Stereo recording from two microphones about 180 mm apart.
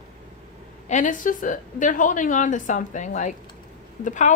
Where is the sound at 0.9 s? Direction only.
45° left (ahead or behind).